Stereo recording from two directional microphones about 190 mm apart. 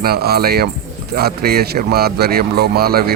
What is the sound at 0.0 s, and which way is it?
Speech, 55° right (ahead or behind).